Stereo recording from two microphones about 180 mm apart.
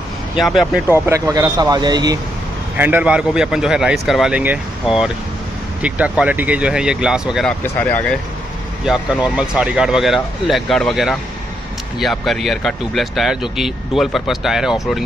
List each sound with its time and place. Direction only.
0.4 s speech: centre (ahead or behind)
1.0 s speech: 15° right (ahead or behind)
2.8 s speech: 10° right (ahead or behind)